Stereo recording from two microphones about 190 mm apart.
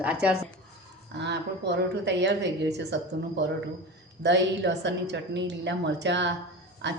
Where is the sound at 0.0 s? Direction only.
5° right (ahead or behind).